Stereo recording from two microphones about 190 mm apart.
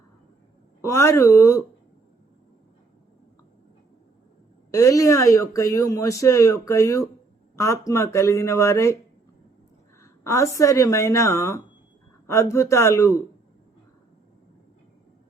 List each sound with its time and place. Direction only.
0.8 s speech: 15° left (ahead or behind)
4.7 s speech: 15° left (ahead or behind)
10.0 s speech: 15° left (ahead or behind)